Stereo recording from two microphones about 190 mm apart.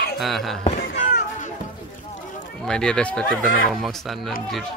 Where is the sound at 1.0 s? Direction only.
40° left (ahead or behind).